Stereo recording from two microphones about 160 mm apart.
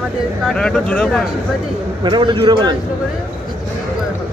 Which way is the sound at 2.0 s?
30° right (ahead or behind).